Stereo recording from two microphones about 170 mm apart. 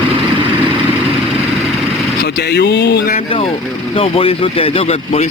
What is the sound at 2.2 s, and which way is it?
Speech, 75° left (ahead or behind).